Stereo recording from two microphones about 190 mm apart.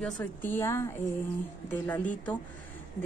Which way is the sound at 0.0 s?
10° left (ahead or behind).